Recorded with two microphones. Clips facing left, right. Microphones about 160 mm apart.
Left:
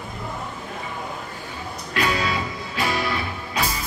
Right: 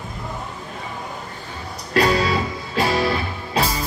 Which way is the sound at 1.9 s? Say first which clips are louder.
Right 6 dB; 35° right (ahead or behind).